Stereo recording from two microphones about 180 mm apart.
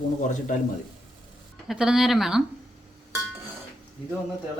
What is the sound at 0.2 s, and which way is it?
Speech, 45° left (ahead or behind).